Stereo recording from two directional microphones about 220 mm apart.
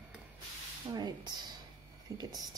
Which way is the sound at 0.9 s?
20° right (ahead or behind).